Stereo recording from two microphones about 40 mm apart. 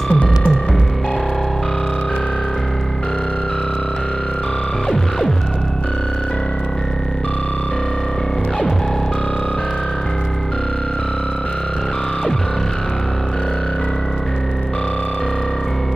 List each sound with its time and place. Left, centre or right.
0.1 s music: left